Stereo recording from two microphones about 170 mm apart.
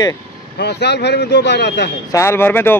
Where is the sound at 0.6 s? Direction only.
80° left.